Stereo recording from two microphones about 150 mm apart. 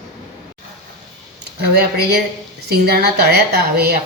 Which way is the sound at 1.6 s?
90° right.